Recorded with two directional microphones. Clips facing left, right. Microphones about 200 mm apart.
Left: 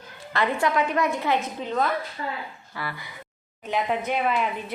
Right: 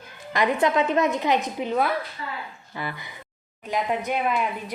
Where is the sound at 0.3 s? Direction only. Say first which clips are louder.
Right 2 dB; 15° right (ahead or behind).